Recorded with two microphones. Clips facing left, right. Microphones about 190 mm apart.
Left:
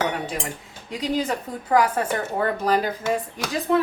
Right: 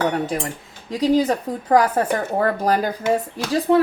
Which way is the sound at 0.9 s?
35° right (ahead or behind).